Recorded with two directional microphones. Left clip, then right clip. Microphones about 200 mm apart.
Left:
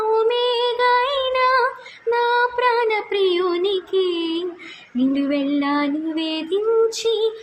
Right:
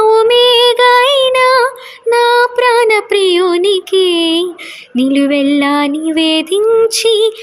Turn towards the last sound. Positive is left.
turn(degrees=-45)  # may be behind; listen again after turning